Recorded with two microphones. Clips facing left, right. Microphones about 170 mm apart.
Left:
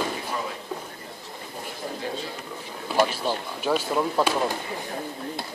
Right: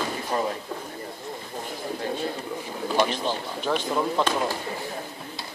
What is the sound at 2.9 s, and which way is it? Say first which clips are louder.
Speech: left 1 dB; 10° left (ahead or behind).